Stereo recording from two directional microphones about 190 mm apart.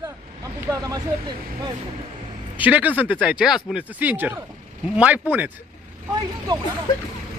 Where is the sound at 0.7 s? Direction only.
20° right (ahead or behind).